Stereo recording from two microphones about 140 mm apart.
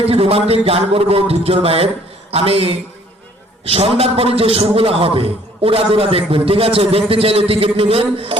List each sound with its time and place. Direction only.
0.0 s a man's voice: 45° right (ahead or behind)